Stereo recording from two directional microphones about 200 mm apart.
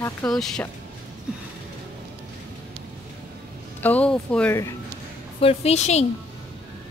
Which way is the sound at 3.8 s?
5° left (ahead or behind).